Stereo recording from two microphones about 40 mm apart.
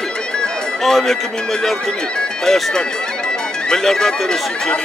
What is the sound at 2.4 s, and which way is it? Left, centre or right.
Speech, centre.